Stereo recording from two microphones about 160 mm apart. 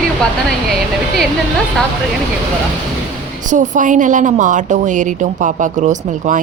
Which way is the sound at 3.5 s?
50° right (ahead or behind).